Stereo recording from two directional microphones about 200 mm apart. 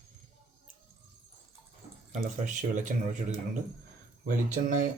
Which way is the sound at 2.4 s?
40° right (ahead or behind).